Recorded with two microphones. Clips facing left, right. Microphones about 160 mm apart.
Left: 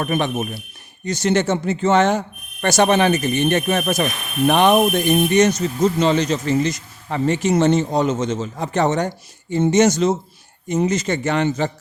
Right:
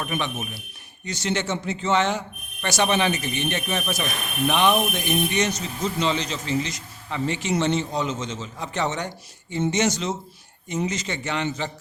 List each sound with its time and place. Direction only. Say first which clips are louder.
0.0 s speech: left 7 dB; 50° left (ahead or behind)